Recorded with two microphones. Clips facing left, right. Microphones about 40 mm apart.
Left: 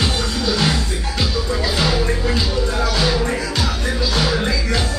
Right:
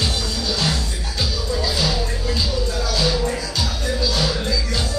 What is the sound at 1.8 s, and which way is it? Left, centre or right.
Music, left.